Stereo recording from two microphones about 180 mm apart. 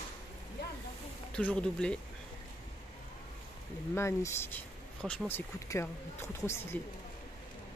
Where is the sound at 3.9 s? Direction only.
15° left (ahead or behind).